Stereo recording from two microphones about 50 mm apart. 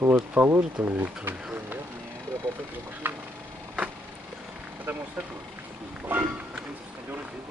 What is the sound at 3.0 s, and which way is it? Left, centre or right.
Speech, right.